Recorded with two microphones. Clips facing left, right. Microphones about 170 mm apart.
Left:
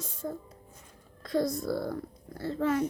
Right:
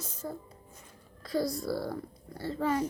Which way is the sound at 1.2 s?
5° right (ahead or behind).